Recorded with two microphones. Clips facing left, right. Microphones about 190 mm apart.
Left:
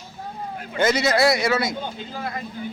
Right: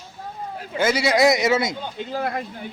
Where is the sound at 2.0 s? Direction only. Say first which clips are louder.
Right 5 dB; 60° right (ahead or behind).